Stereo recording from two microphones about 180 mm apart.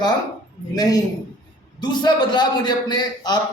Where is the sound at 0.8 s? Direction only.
20° left (ahead or behind).